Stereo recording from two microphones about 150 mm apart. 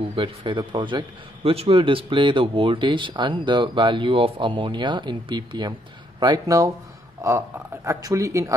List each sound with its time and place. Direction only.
0.0 s a man's voice: 35° right (ahead or behind)